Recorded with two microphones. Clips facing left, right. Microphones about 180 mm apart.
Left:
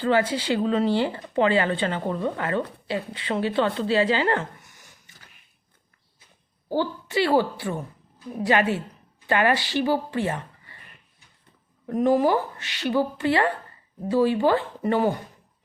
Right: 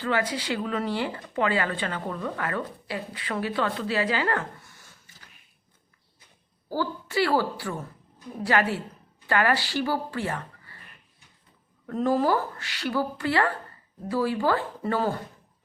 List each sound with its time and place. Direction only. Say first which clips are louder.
0.0 s speech: left 5 dB; 30° left (ahead or behind)
6.7 s speech: left 3 dB; 25° left (ahead or behind)
11.9 s speech: left 3 dB; 15° left (ahead or behind)